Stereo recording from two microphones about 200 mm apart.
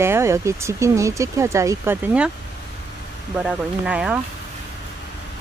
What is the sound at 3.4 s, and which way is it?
Speech, 5° right (ahead or behind).